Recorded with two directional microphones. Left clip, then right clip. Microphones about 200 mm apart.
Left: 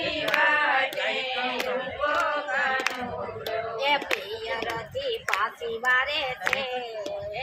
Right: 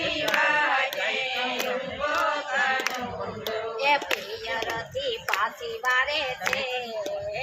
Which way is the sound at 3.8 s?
15° left (ahead or behind).